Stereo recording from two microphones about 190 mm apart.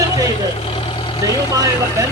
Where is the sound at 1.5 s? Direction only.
15° right (ahead or behind).